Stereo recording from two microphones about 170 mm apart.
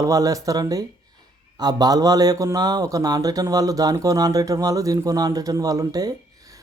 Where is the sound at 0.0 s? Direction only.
20° right (ahead or behind).